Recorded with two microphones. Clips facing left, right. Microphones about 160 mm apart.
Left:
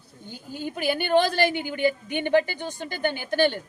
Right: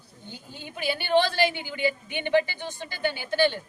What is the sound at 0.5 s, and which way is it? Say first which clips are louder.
A woman's voice: left 5 dB; 45° left (ahead or behind).